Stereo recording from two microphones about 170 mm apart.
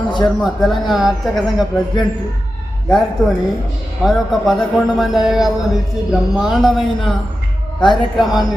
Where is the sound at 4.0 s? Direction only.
Centre (ahead or behind).